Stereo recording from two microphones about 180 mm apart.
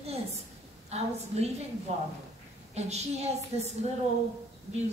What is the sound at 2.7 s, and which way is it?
A woman's voice, 35° right (ahead or behind).